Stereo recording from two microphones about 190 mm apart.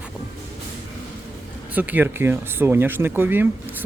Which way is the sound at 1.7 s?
10° right (ahead or behind).